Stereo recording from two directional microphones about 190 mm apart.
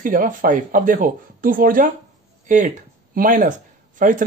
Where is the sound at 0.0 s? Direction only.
45° right (ahead or behind).